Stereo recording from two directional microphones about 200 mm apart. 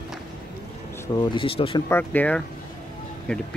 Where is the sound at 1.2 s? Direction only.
25° left (ahead or behind).